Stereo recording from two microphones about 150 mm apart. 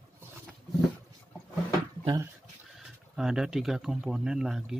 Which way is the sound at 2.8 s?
5° right (ahead or behind).